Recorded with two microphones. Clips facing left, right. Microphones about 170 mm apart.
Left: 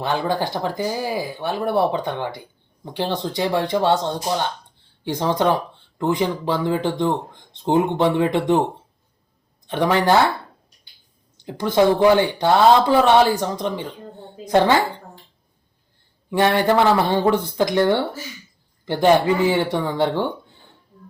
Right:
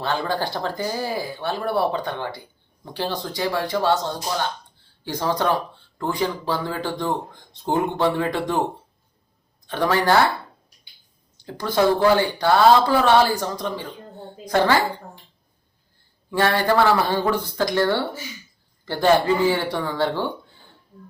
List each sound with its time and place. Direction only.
0.0 s speech: 15° left (ahead or behind)
9.6 s speech: 20° left (ahead or behind)
11.3 s speech: 20° left (ahead or behind)
16.3 s speech: 20° left (ahead or behind)